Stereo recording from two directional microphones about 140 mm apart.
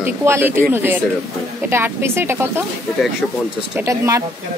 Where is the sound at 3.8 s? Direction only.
20° right (ahead or behind).